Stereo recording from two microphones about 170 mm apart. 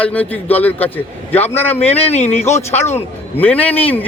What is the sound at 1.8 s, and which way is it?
A man's voice, 40° left (ahead or behind).